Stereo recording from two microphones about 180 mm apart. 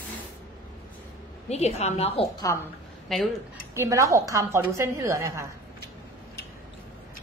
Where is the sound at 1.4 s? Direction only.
35° left (ahead or behind).